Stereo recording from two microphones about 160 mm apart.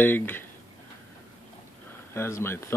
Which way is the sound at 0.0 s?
10° left (ahead or behind).